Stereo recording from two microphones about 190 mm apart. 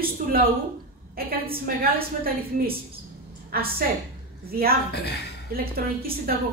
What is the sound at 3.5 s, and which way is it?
A woman's voice, 50° right (ahead or behind).